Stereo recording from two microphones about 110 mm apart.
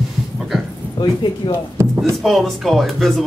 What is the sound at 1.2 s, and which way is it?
Speech, 45° left (ahead or behind).